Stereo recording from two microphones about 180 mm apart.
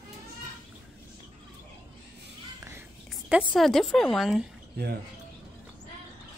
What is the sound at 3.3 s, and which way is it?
A woman's voice, 5° right (ahead or behind).